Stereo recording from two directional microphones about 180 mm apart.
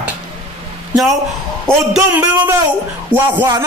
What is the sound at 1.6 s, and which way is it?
A man's voice, 5° right (ahead or behind).